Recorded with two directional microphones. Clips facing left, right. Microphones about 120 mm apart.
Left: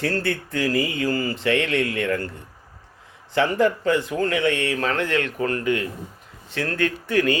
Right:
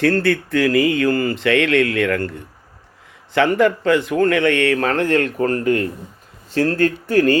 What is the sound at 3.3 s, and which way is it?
A man's voice, 75° right (ahead or behind).